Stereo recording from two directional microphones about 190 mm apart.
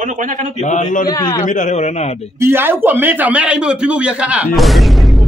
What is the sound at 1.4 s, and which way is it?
Speech, 40° left (ahead or behind).